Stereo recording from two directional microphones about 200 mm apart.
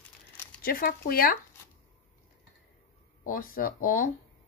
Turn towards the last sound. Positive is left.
turn(degrees=45)  # may be behind; listen again after turning